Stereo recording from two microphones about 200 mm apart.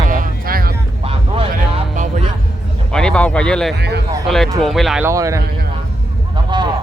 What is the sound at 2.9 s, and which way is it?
Speech, 5° left (ahead or behind).